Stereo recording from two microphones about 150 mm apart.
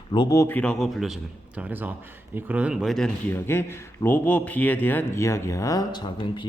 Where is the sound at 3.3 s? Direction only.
15° left (ahead or behind).